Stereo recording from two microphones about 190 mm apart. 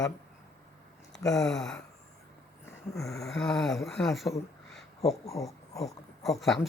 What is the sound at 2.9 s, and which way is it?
Speech, centre (ahead or behind).